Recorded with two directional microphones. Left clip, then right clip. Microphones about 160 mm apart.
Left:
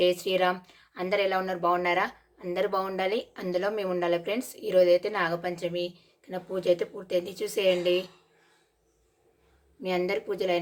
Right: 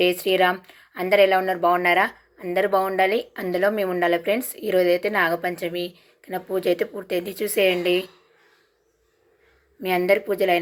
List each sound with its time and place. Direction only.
0.0 s speech: 15° right (ahead or behind)
9.8 s a woman's voice: 20° right (ahead or behind)